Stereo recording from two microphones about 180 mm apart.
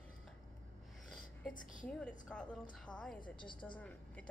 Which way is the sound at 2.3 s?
5° left (ahead or behind).